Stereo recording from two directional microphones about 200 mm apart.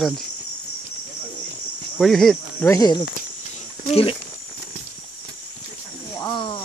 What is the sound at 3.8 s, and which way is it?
Speech, 30° left (ahead or behind).